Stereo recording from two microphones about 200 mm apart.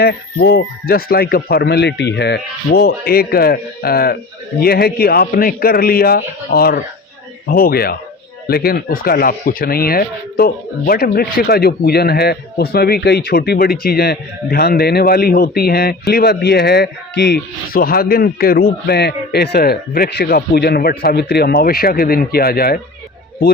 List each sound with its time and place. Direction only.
0.0 s speech: 55° left (ahead or behind)